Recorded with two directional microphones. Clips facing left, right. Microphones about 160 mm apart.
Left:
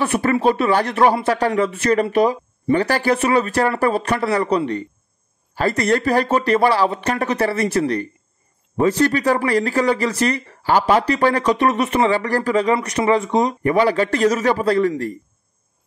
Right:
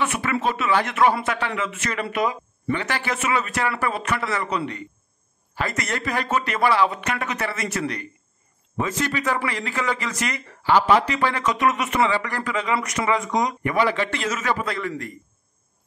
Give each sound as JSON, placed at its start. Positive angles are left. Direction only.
{"t": 0.0, "sound": "speech", "side_deg": 35}